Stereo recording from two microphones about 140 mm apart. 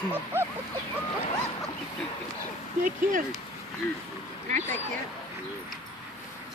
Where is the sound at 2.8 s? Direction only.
75° right (ahead or behind).